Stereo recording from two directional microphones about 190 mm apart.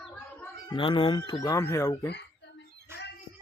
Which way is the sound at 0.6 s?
25° left (ahead or behind).